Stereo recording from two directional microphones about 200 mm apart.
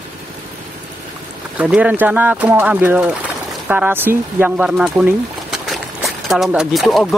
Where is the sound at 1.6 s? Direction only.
5° right (ahead or behind).